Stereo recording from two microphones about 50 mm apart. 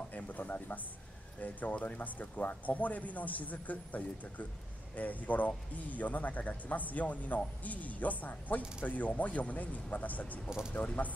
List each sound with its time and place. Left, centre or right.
0.1 s speech: left